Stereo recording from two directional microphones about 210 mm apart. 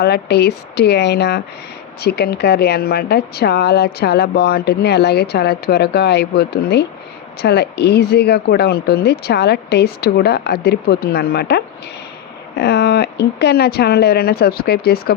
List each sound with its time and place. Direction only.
0.0 s speech: 50° left (ahead or behind)